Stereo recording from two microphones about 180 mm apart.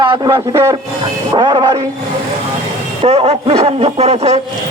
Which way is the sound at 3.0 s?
35° right (ahead or behind).